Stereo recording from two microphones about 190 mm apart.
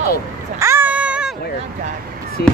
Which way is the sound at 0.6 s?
10° right (ahead or behind).